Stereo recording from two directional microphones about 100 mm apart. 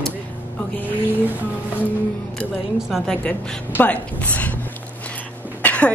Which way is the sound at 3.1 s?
10° left (ahead or behind).